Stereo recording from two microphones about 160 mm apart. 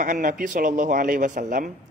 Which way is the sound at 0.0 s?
55° right (ahead or behind).